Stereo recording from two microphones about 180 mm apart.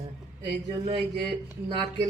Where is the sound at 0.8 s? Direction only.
30° right (ahead or behind).